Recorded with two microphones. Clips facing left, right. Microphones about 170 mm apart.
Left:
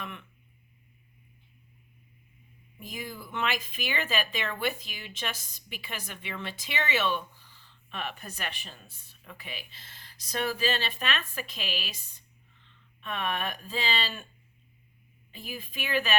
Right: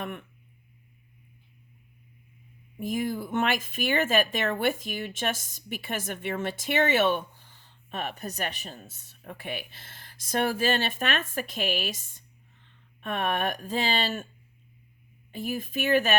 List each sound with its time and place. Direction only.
0.0 s speech: 45° right (ahead or behind)
2.7 s speech: 50° right (ahead or behind)
15.3 s speech: 45° right (ahead or behind)